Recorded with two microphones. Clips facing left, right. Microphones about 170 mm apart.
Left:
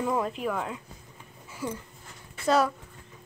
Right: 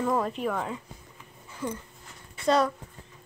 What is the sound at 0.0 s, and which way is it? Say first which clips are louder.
A child's voice: right 1 dB; 5° left (ahead or behind).